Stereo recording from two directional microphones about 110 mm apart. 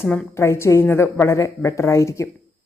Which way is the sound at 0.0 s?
20° left (ahead or behind).